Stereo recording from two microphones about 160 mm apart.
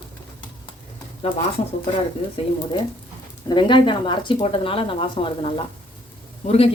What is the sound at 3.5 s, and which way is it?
Speech, 30° left (ahead or behind).